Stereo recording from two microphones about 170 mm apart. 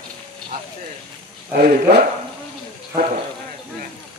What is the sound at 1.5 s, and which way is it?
Speech, 60° right (ahead or behind).